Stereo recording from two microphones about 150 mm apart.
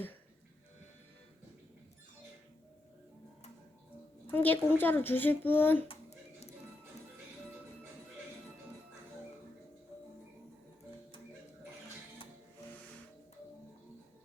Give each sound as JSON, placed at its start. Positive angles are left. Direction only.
{"t": 4.3, "sound": "speech", "side_deg": 10}